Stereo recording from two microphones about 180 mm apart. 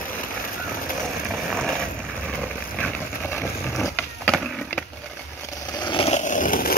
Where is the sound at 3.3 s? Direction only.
15° left (ahead or behind).